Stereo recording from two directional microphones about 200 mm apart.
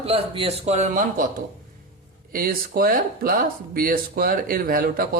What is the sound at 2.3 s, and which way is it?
A man's voice, 45° right (ahead or behind).